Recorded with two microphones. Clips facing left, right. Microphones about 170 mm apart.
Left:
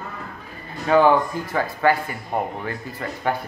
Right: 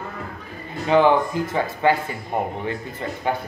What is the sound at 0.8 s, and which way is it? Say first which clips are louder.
Speech: even; 20° right (ahead or behind).